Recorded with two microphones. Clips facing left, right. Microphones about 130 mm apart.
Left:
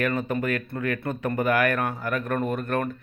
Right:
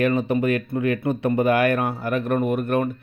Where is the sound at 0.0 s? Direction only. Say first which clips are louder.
Right 5 dB; 20° right (ahead or behind).